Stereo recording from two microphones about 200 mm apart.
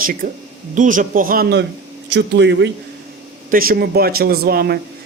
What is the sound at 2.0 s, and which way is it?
Speech, 60° right (ahead or behind).